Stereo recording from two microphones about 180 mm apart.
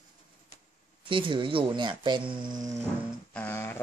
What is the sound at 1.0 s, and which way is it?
Speech, 30° right (ahead or behind).